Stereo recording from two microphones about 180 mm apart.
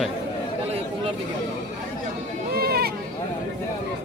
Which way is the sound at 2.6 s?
60° right (ahead or behind).